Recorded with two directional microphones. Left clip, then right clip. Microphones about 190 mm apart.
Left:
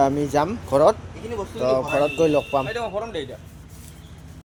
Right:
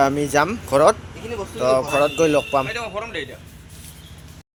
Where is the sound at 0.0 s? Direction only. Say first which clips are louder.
Right 2 dB; 5° left (ahead or behind).